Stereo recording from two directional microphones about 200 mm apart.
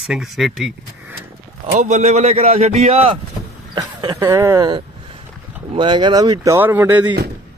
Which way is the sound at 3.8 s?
20° right (ahead or behind).